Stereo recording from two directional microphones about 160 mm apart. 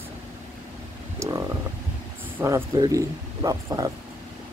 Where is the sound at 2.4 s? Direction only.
20° right (ahead or behind).